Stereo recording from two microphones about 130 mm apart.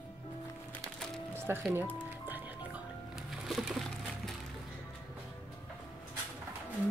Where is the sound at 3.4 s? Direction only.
Centre (ahead or behind).